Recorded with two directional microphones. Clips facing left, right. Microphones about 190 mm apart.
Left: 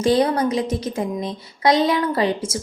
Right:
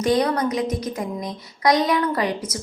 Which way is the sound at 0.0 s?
30° left (ahead or behind).